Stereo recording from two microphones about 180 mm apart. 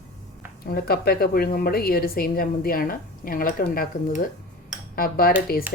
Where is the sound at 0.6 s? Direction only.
60° left (ahead or behind).